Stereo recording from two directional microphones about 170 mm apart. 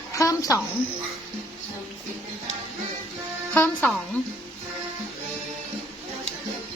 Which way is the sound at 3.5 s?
10° left (ahead or behind).